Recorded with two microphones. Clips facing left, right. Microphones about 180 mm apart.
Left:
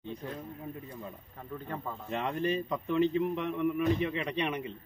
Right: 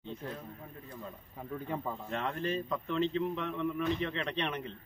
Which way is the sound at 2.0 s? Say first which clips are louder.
Left 5 dB; 15° left (ahead or behind).